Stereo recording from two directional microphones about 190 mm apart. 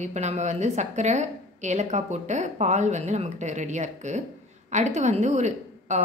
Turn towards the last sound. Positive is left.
turn(degrees=-40)  # may be behind; listen again after turning